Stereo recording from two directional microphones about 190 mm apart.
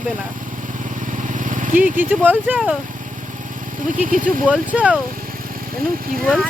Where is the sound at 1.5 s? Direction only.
40° right (ahead or behind).